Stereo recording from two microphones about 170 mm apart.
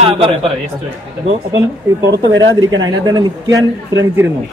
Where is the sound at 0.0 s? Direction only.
35° right (ahead or behind).